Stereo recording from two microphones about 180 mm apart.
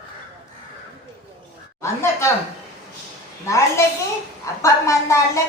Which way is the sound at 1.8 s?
15° left (ahead or behind).